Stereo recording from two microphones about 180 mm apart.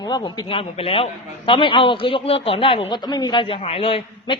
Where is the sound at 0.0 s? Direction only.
25° left (ahead or behind).